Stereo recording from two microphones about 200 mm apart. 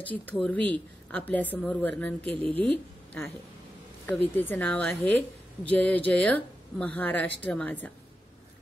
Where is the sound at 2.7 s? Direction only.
10° left (ahead or behind).